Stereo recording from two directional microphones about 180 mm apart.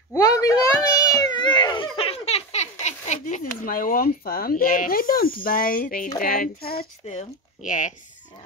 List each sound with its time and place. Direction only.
0.1 s a sound: 20° left (ahead or behind); by 6.0 s 50° left (ahead or behind)
6.2 s speech: 55° left (ahead or behind)
7.1 s speech: 45° left (ahead or behind)